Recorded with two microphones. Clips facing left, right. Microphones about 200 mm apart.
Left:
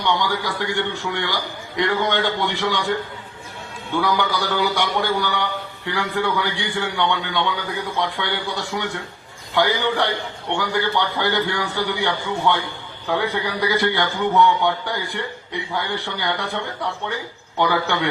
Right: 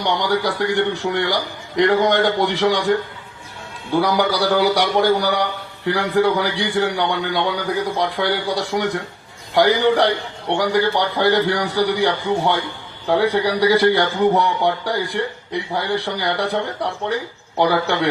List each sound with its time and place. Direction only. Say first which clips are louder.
0.0 s a man's voice: right 3 dB; 40° right (ahead or behind)
3.9 s a man's voice: right 4 dB; 35° right (ahead or behind)